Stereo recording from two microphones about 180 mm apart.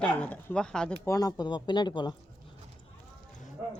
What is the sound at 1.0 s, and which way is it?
Speech, 20° left (ahead or behind).